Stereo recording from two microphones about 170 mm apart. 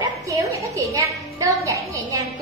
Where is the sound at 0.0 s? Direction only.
20° right (ahead or behind).